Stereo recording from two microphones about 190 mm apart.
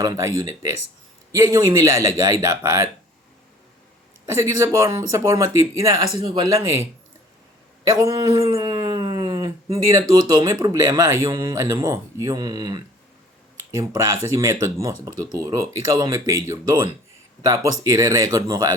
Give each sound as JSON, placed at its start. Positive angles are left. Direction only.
{"t": 0.0, "sound": "a man's voice", "side_deg": -15}
{"t": 4.3, "sound": "a man's voice", "side_deg": -15}
{"t": 7.9, "sound": "dog", "side_deg": -20}
{"t": 9.7, "sound": "a man's voice", "side_deg": -15}